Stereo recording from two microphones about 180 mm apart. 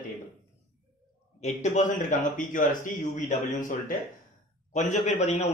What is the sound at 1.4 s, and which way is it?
Speech, 40° left (ahead or behind).